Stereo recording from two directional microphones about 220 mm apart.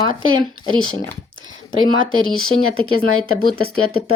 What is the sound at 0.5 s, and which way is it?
Speech, 70° right (ahead or behind).